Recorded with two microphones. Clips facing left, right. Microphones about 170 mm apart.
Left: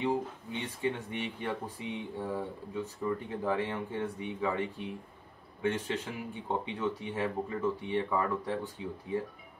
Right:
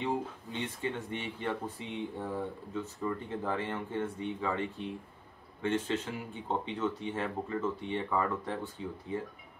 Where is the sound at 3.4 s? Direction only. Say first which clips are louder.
Left 4 dB; 15° left (ahead or behind).